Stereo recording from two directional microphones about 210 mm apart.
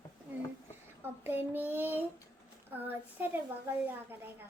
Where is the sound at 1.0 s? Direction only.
10° right (ahead or behind).